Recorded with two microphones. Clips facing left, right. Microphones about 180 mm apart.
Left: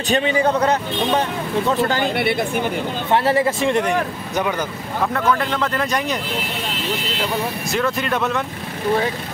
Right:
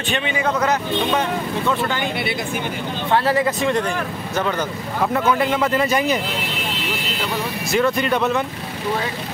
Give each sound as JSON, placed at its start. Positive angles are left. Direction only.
{"t": 0.1, "sound": "a man's voice", "side_deg": 35}
{"t": 2.1, "sound": "speech", "side_deg": 55}
{"t": 3.1, "sound": "speech", "side_deg": 25}
{"t": 4.4, "sound": "speech", "side_deg": 10}
{"t": 5.0, "sound": "speech", "side_deg": -5}
{"t": 7.7, "sound": "speech", "side_deg": 0}